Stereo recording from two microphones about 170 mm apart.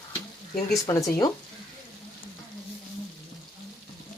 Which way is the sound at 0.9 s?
20° left (ahead or behind).